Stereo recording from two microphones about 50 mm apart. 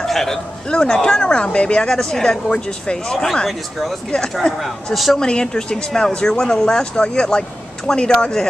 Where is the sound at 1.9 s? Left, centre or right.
Centre.